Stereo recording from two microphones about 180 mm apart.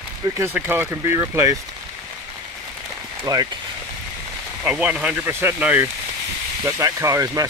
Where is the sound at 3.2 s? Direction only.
20° right (ahead or behind).